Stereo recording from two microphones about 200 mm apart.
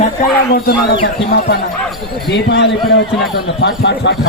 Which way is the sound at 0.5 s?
50° left (ahead or behind).